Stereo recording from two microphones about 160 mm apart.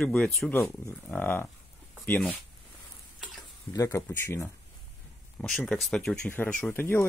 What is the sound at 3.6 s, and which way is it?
Speech, 20° left (ahead or behind).